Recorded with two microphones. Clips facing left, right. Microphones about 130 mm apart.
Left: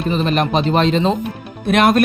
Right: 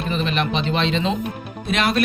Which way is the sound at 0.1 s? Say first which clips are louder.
Left 6 dB; 40° left (ahead or behind).